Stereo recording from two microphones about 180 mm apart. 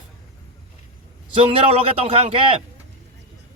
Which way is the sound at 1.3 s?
35° right (ahead or behind).